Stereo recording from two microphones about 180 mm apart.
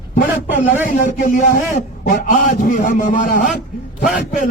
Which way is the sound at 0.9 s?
45° left (ahead or behind).